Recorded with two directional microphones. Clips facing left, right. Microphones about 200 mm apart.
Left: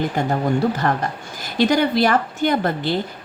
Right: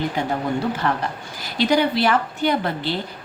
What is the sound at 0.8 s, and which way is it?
A woman's voice, 45° left (ahead or behind).